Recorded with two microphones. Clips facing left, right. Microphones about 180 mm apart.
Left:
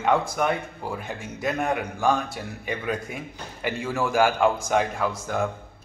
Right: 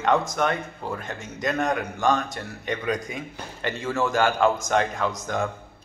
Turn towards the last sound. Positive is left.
turn(degrees=5)  # may be behind; listen again after turning